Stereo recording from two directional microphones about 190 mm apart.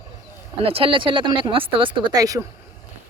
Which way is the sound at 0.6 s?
30° right (ahead or behind).